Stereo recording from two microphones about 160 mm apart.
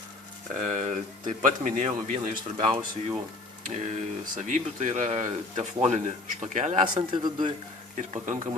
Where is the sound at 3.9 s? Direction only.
50° right (ahead or behind).